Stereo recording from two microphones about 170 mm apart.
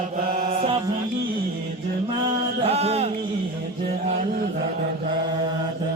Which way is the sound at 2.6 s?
35° right (ahead or behind).